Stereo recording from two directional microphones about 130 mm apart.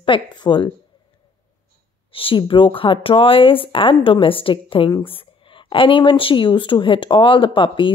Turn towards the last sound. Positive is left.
turn(degrees=40)  # may be behind; listen again after turning